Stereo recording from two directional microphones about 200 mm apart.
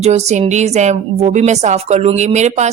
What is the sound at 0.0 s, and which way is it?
Speech, 35° right (ahead or behind).